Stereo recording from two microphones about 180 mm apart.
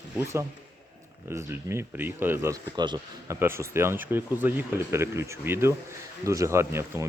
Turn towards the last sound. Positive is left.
turn(degrees=-15)  # may be behind; listen again after turning